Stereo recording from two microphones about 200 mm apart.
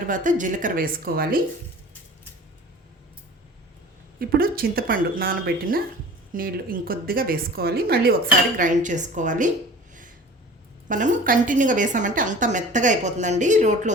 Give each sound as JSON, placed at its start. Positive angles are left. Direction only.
{"t": 0.1, "sound": "a woman's voice", "side_deg": -40}
{"t": 4.2, "sound": "a woman's voice", "side_deg": -45}
{"t": 8.5, "sound": "a woman's voice", "side_deg": -40}
{"t": 10.8, "sound": "a woman's voice", "side_deg": -40}